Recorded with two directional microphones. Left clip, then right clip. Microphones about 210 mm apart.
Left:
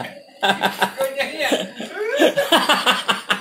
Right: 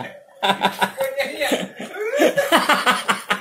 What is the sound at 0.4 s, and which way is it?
Speech, 20° right (ahead or behind).